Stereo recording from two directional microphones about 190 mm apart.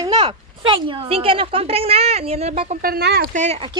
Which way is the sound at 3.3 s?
35° right (ahead or behind).